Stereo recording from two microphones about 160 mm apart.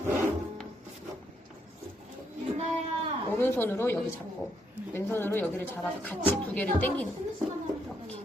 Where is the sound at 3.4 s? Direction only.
15° left (ahead or behind).